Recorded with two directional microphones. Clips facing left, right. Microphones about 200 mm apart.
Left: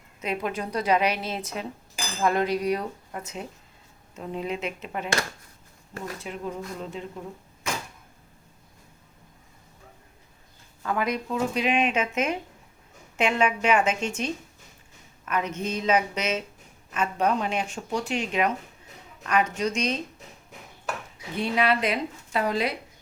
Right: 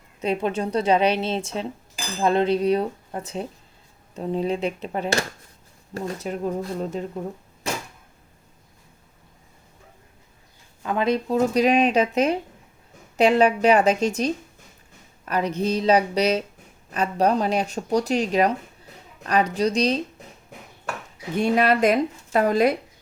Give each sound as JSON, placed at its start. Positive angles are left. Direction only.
{"t": 0.2, "sound": "a woman's voice", "side_deg": -30}
{"t": 6.1, "sound": "speech", "side_deg": -45}
{"t": 10.8, "sound": "a woman's voice", "side_deg": -25}
{"t": 11.3, "sound": "speech", "side_deg": -40}
{"t": 21.3, "sound": "speech", "side_deg": -45}